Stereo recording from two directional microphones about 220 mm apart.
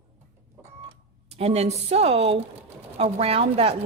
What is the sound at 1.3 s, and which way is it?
Speech, 30° right (ahead or behind).